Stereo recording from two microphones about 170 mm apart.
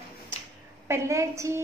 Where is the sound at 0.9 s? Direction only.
15° right (ahead or behind).